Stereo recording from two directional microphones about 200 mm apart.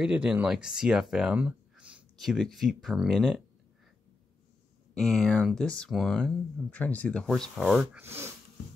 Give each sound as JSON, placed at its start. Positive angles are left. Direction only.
{"t": 0.0, "sound": "speech", "side_deg": -5}
{"t": 4.9, "sound": "speech", "side_deg": 0}